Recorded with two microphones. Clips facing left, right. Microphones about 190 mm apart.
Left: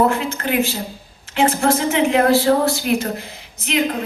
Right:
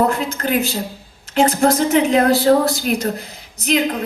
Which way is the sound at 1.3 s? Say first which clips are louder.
Right 2 dB; 40° right (ahead or behind).